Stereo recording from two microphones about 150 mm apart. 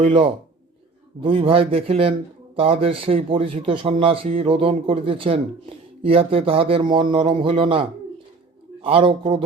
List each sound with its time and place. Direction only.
0.0 s speech: 40° right (ahead or behind)